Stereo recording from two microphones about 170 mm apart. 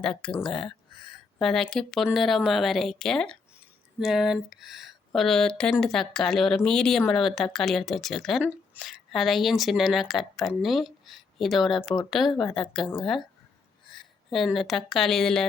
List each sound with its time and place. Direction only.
0.0 s speech: 5° left (ahead or behind)